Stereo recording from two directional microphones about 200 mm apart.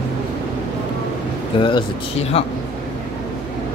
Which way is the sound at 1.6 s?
25° left (ahead or behind).